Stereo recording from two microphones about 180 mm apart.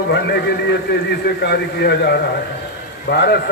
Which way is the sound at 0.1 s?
70° left (ahead or behind).